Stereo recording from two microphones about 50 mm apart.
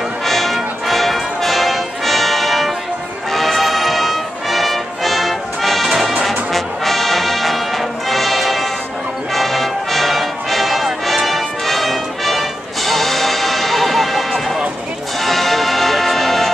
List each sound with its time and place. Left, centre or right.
0.2 s music: centre
6.5 s brass instrument: centre
9.3 s music: centre